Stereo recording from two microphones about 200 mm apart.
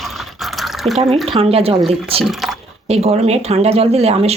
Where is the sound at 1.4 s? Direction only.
30° right (ahead or behind).